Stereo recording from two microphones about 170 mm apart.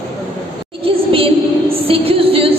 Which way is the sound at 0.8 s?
30° right (ahead or behind).